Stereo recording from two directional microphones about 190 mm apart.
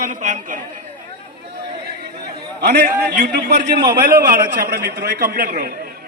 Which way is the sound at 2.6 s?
55° right (ahead or behind).